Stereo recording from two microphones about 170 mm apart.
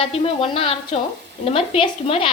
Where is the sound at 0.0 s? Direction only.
35° left (ahead or behind).